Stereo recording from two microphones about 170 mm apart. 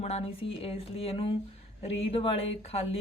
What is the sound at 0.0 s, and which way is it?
Speech, 35° left (ahead or behind).